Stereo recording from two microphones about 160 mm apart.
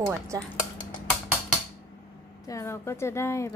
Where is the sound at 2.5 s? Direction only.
20° left (ahead or behind).